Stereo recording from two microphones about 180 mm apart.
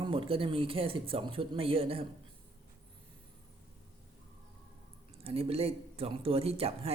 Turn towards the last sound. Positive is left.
turn(degrees=-35)  # may be behind; listen again after turning